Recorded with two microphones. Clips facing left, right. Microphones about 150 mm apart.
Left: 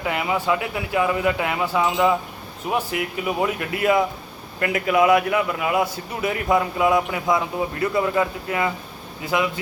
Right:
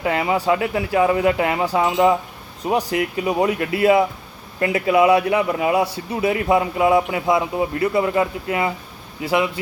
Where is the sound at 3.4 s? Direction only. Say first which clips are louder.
Right 6 dB; 30° right (ahead or behind).